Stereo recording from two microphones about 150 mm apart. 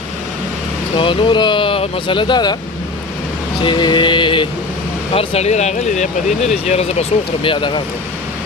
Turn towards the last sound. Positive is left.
turn(degrees=35)  # may be behind; listen again after turning